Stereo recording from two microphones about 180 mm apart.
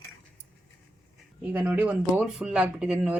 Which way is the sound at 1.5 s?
10° right (ahead or behind).